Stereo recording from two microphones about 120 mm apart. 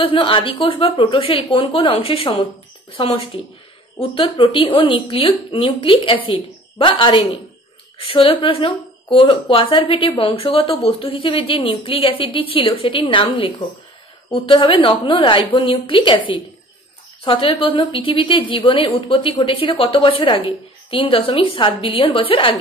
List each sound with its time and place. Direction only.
0.0 s a woman's voice: 45° left (ahead or behind)